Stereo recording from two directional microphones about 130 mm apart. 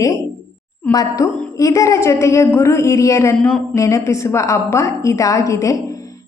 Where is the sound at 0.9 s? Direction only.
25° left (ahead or behind).